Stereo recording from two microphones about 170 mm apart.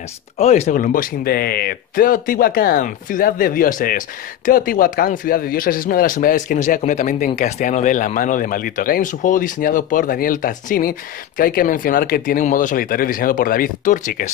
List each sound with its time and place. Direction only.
0.4 s speech: 40° left (ahead or behind)